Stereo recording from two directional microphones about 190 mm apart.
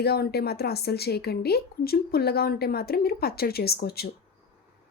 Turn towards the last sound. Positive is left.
turn(degrees=55)  # may be behind; listen again after turning